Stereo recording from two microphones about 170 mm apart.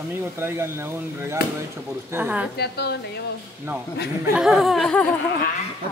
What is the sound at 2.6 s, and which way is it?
Speech, 75° left (ahead or behind).